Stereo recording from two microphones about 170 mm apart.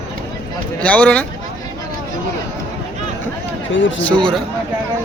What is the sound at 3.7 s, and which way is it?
Speech, 90° left.